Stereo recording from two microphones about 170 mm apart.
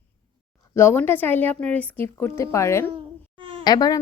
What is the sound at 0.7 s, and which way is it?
A woman's voice, 15° left (ahead or behind).